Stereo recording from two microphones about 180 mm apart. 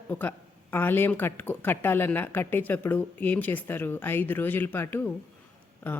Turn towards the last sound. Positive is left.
turn(degrees=10)  # may be behind; listen again after turning